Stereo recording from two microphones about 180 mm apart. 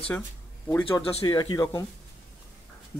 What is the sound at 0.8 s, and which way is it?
Speech, 25° left (ahead or behind).